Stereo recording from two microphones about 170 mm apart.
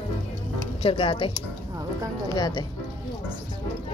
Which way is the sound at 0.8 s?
30° left (ahead or behind).